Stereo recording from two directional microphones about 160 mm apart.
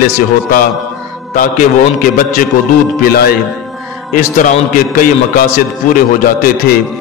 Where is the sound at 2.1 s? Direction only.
60° left (ahead or behind).